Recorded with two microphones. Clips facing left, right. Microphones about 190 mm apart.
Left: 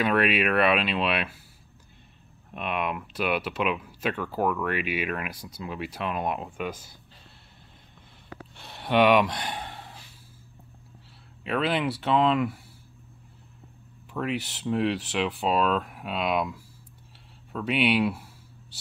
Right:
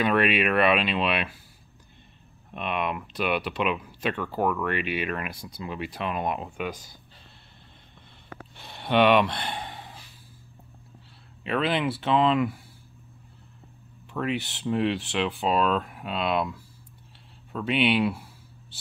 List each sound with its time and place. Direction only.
0.0 s speech: centre (ahead or behind)
2.5 s speech: 5° left (ahead or behind)
8.5 s a sound: centre (ahead or behind)
11.4 s speech: 5° left (ahead or behind)
14.1 s speech: centre (ahead or behind)